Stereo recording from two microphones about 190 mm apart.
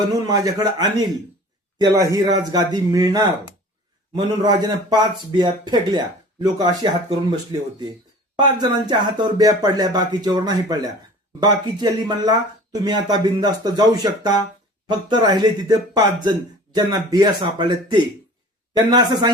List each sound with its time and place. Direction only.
0.1 s speech: 20° right (ahead or behind)
8.4 s speech: 25° right (ahead or behind)